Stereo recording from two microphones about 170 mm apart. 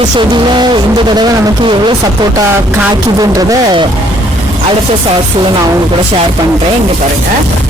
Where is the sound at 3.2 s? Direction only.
20° right (ahead or behind).